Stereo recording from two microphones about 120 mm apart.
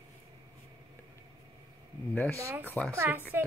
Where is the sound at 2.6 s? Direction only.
10° left (ahead or behind).